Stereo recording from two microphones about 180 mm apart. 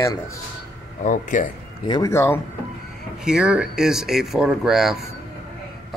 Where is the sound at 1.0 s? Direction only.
45° left (ahead or behind).